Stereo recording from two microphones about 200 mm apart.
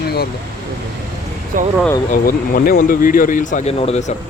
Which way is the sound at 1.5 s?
40° right (ahead or behind).